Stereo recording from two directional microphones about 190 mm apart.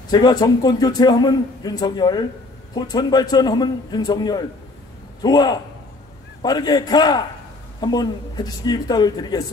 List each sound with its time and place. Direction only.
0.1 s a man's voice: 20° left (ahead or behind)